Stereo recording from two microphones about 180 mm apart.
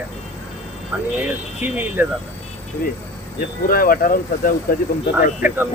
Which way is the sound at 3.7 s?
55° left (ahead or behind).